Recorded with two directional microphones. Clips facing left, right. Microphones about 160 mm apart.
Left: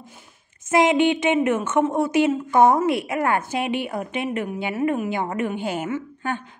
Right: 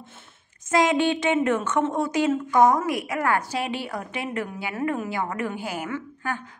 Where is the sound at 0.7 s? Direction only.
20° left (ahead or behind).